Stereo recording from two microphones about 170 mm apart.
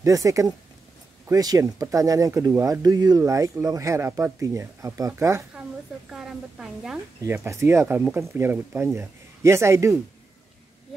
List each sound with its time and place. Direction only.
0.0 s speech: 20° right (ahead or behind)
6.0 s a woman's voice: centre (ahead or behind)
7.2 s speech: 15° right (ahead or behind)